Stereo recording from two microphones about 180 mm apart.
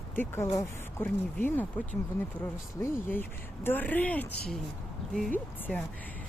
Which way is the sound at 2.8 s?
10° left (ahead or behind).